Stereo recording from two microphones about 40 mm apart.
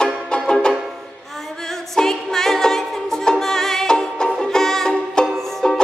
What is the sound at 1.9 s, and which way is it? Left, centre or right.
Music, centre.